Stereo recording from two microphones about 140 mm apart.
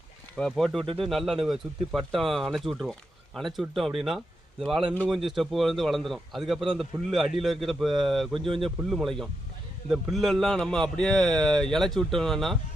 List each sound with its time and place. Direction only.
0.3 s a man's voice: 5° left (ahead or behind)
8.4 s speech: 40° right (ahead or behind)
8.6 s a man's voice: centre (ahead or behind)